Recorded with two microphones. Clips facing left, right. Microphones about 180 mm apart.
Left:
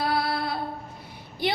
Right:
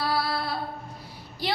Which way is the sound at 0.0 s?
20° left (ahead or behind).